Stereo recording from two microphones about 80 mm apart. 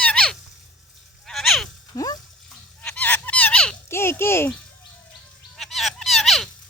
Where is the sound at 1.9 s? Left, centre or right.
Left.